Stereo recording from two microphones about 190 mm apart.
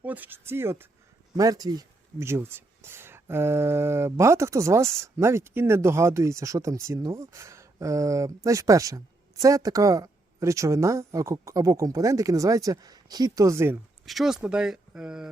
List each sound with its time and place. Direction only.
0.0 s speech: 10° right (ahead or behind)
14.0 s speech: centre (ahead or behind)